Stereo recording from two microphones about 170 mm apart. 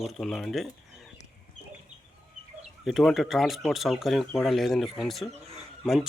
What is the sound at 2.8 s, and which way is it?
Speech, centre (ahead or behind).